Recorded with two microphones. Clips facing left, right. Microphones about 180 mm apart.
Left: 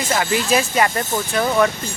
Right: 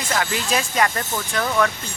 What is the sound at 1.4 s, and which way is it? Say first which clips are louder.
Speech: left 4 dB; 20° left (ahead or behind).